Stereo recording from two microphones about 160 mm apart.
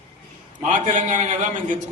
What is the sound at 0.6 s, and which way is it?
A man's voice, 50° right (ahead or behind).